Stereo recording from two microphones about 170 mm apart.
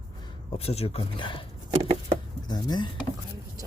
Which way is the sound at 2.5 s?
25° left (ahead or behind).